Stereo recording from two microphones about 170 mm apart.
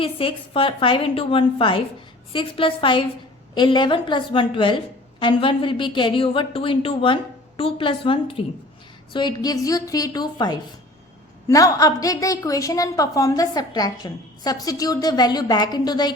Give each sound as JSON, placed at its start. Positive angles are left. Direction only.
{"t": 0.0, "sound": "a woman's voice", "side_deg": 30}